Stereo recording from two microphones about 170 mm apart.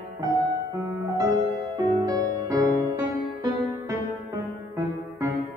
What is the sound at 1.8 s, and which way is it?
Music, 20° right (ahead or behind).